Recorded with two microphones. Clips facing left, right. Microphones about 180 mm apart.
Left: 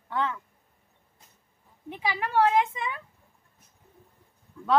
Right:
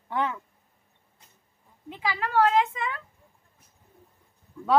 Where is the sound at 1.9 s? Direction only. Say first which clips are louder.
Right 1 dB; 15° left (ahead or behind).